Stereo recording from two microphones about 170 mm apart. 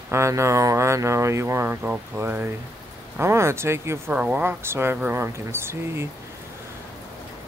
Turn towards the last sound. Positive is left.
turn(degrees=-15)  # may be behind; listen again after turning